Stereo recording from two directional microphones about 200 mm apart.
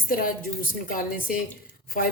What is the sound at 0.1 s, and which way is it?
A woman's voice, 45° left (ahead or behind).